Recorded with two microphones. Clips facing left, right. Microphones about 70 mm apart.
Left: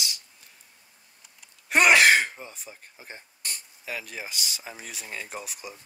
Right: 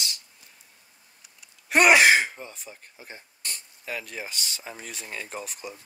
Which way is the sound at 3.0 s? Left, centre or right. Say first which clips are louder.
Even; centre.